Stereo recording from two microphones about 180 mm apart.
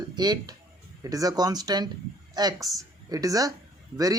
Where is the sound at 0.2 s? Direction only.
25° right (ahead or behind).